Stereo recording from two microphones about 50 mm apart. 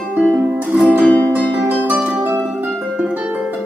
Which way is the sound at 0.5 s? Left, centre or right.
Right.